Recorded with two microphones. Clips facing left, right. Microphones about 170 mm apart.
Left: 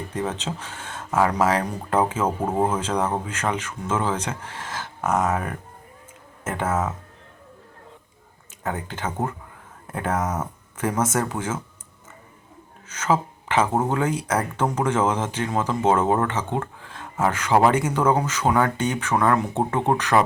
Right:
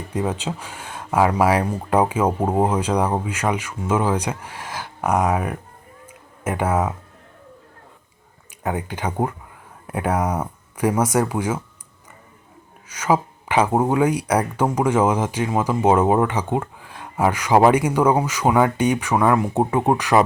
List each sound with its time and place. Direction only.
0.1 s speech: 10° right (ahead or behind)
8.6 s speech: 15° right (ahead or behind)
12.9 s speech: 10° right (ahead or behind)